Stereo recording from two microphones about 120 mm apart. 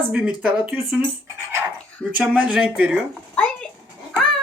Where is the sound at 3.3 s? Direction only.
10° left (ahead or behind).